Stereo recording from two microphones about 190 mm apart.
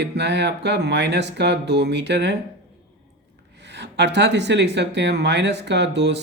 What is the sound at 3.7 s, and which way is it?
Speech, 65° right (ahead or behind).